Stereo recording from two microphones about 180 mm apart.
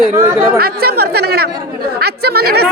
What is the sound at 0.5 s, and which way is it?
Speech, 60° right (ahead or behind).